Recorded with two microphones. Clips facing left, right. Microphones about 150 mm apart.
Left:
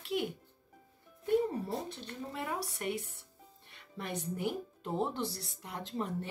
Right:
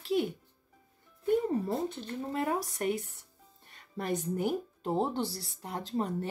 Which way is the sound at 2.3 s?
40° right (ahead or behind).